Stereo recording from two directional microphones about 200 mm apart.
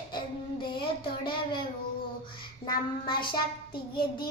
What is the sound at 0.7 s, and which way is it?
Child singing, 25° left (ahead or behind).